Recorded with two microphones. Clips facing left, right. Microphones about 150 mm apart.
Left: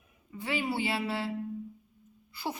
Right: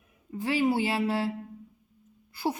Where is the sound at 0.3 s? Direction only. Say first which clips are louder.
Right 7 dB; 45° right (ahead or behind).